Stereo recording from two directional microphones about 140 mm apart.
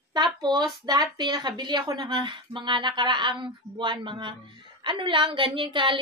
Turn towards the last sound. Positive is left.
turn(degrees=-35)  # may be behind; listen again after turning